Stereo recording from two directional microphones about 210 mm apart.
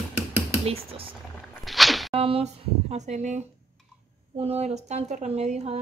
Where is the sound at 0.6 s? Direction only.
25° right (ahead or behind).